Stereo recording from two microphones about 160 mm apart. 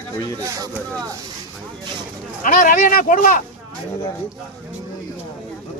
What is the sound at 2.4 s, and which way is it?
Speech, 55° left (ahead or behind).